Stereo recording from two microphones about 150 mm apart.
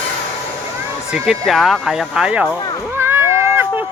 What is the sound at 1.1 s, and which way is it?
Speech, 5° right (ahead or behind).